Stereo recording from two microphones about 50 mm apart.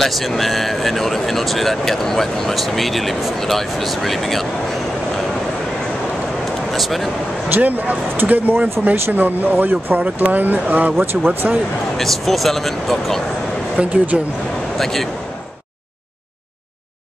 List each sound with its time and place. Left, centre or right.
0.0 s speech: centre
6.7 s speech: centre
7.5 s speech: right
12.0 s speech: centre
13.7 s speech: right
14.8 s speech: centre